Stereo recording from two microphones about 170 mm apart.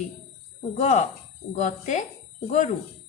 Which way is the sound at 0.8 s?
45° left (ahead or behind).